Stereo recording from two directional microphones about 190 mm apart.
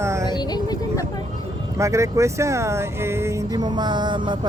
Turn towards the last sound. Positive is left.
turn(degrees=-25)  # may be behind; listen again after turning